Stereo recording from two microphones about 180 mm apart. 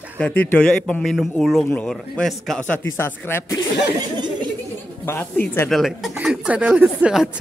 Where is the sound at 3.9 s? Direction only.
25° right (ahead or behind).